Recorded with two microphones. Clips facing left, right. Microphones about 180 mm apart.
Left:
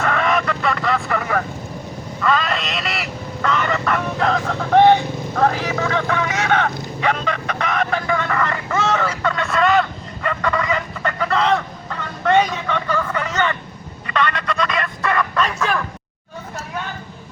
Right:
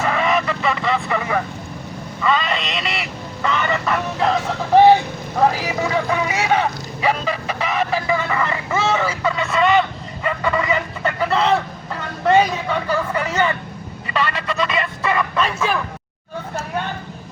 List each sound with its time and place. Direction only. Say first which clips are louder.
0.0 s vehicle: even; centre (ahead or behind)
5.4 s dog: right 1 dB; 10° right (ahead or behind)
10.2 s fowl: right 1 dB; 5° right (ahead or behind)
12.3 s vehicle: right 1 dB; 5° right (ahead or behind)
14.1 s a sound: left 1 dB; 5° right (ahead or behind)